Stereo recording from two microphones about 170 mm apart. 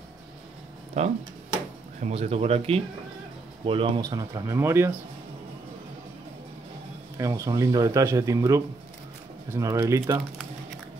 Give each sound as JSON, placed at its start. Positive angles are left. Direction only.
{"t": 1.0, "sound": "speech", "side_deg": -40}
{"t": 7.2, "sound": "speech", "side_deg": -20}